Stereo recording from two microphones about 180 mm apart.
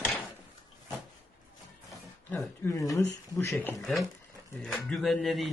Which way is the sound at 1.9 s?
15° left (ahead or behind).